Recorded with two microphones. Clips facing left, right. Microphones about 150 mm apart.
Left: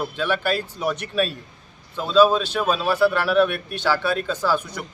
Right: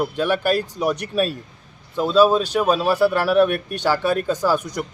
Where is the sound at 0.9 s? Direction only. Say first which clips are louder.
Right 2 dB; 40° right (ahead or behind).